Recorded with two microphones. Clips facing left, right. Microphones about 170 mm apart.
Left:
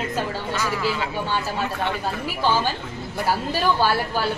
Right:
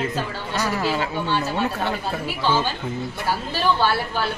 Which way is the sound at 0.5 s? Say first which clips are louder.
Right 4 dB; 40° right (ahead or behind).